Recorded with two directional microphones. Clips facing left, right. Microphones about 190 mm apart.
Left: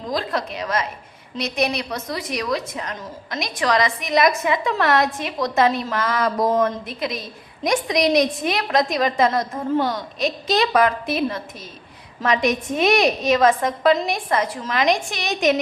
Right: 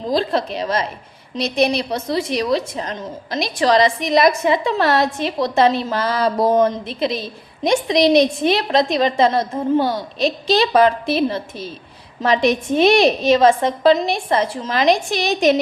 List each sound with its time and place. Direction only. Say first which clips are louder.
0.0 s a woman's voice: right 5 dB; 30° right (ahead or behind)